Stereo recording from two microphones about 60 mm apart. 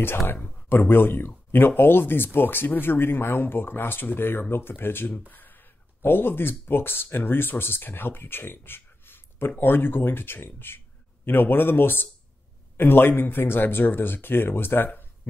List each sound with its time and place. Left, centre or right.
0.0 s speech: left